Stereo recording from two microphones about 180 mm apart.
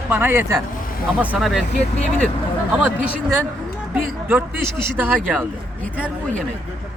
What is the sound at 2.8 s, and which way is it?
Speech, 5° right (ahead or behind).